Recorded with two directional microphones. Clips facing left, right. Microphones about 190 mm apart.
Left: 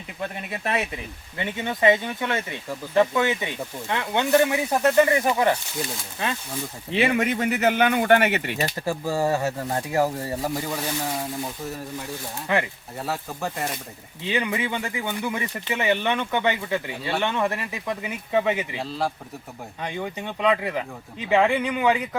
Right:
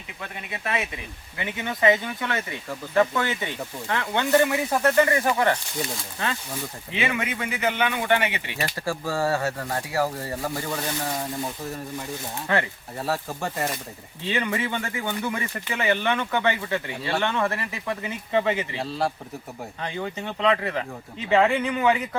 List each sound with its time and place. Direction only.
0.5 s speech: 35° left (ahead or behind)
1.4 s speech: 25° left (ahead or behind)
6.9 s speech: 40° left (ahead or behind)
8.6 s speech: 20° left (ahead or behind)
13.0 s speech: centre (ahead or behind)
14.3 s speech: 15° left (ahead or behind)
18.8 s speech: centre (ahead or behind)
19.8 s speech: 15° left (ahead or behind)